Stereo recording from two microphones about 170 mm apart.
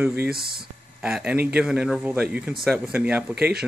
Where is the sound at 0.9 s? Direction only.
5° right (ahead or behind).